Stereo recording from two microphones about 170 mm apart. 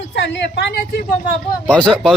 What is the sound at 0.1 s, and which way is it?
A woman's voice, 90° left.